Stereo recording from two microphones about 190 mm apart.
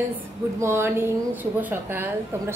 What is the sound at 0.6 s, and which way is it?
A woman's voice, 15° right (ahead or behind).